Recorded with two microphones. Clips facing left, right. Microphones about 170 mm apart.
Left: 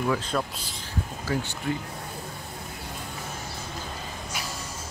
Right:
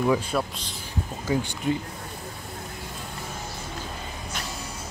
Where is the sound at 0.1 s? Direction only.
10° right (ahead or behind).